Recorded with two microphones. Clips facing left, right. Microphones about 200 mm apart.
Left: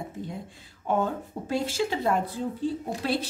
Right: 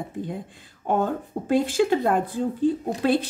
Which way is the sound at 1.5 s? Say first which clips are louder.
Right 7 dB; 55° right (ahead or behind).